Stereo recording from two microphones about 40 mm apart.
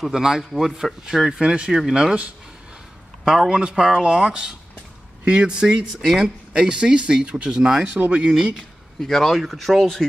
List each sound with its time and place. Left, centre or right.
0.0 s speech: centre
0.4 s speech: centre
1.7 s speech: centre
3.3 s speech: centre
5.9 s speech: centre
6.2 s speech: right
8.3 s speech: centre
9.0 s speech: centre